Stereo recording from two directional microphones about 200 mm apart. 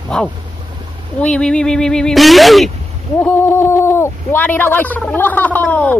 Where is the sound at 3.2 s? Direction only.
10° left (ahead or behind).